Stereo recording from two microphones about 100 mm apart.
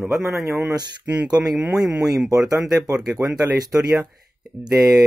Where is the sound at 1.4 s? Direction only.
15° right (ahead or behind).